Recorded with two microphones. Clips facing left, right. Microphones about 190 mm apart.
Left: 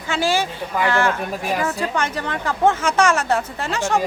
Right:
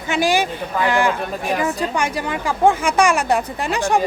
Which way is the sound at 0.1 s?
15° right (ahead or behind).